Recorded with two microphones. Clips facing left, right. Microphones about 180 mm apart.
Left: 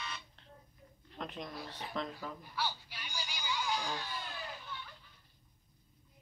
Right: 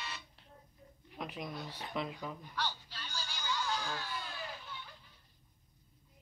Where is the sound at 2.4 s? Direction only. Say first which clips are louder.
Left 1 dB; 10° left (ahead or behind).